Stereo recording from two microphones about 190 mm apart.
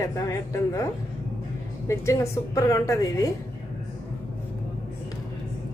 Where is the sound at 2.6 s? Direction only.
15° left (ahead or behind).